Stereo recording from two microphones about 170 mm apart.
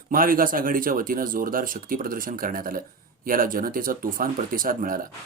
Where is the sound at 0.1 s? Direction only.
55° right (ahead or behind).